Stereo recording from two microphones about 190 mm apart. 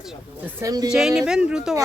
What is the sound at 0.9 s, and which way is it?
Speech, 5° right (ahead or behind).